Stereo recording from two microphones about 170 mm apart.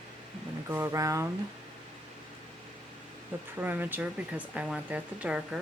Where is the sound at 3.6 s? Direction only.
10° right (ahead or behind).